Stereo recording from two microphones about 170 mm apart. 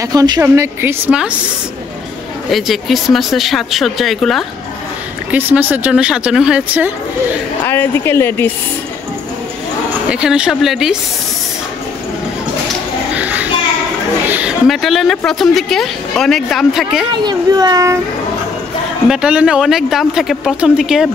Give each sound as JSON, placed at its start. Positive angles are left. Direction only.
{"t": 0.0, "sound": "speech", "side_deg": -20}
{"t": 2.5, "sound": "speech", "side_deg": 0}
{"t": 5.3, "sound": "speech", "side_deg": -10}
{"t": 7.6, "sound": "a woman's voice", "side_deg": 15}
{"t": 9.8, "sound": "a woman's voice", "side_deg": -5}
{"t": 13.2, "sound": "a sound", "side_deg": -10}
{"t": 14.7, "sound": "speech", "side_deg": 0}
{"t": 17.2, "sound": "a child's voice", "side_deg": -25}
{"t": 19.0, "sound": "speech", "side_deg": -5}